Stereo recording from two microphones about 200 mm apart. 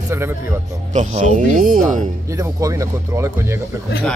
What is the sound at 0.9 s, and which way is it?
Speech, 35° right (ahead or behind).